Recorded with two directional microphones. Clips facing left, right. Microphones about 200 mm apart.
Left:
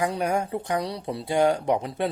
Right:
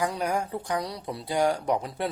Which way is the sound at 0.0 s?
25° left (ahead or behind).